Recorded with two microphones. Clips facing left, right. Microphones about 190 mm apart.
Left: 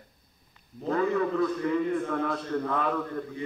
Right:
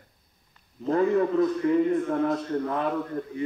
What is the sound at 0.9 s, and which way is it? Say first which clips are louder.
A man's voice: right 4 dB; 35° right (ahead or behind).